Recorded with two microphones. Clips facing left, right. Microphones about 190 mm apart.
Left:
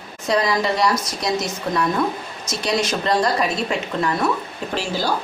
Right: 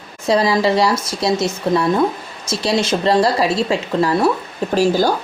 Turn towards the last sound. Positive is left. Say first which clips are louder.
# right 9 dB
turn(degrees=-45)  # may be behind; listen again after turning